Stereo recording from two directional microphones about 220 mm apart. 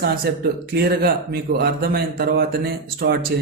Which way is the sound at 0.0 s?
40° right (ahead or behind).